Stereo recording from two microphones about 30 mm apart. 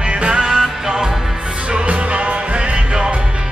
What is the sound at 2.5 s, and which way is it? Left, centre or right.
Music, right.